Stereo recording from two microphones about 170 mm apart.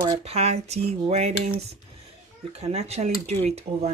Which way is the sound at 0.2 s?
40° right (ahead or behind).